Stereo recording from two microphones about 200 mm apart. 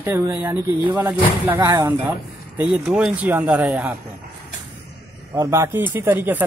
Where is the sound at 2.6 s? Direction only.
5° right (ahead or behind).